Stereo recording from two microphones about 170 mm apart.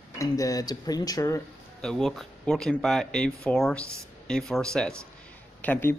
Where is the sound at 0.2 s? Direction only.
20° left (ahead or behind).